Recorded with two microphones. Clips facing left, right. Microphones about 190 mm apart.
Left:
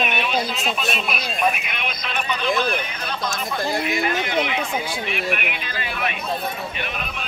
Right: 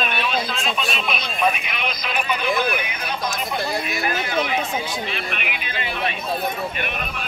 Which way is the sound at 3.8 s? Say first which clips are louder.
Left 2 dB; 20° left (ahead or behind).